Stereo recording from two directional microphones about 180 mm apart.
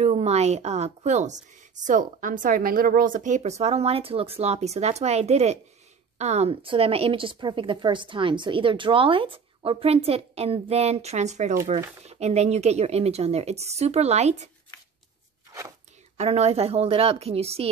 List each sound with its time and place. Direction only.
0.0 s a woman's voice: 35° right (ahead or behind)
16.2 s speech: 35° right (ahead or behind)